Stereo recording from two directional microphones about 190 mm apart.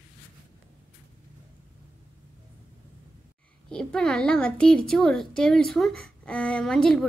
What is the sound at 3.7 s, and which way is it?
A woman's voice, 5° left (ahead or behind).